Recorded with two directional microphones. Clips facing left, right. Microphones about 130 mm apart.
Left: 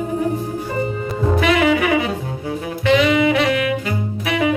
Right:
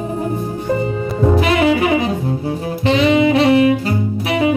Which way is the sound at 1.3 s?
30° right (ahead or behind).